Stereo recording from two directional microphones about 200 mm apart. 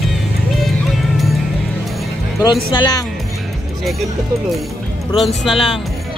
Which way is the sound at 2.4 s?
20° left (ahead or behind).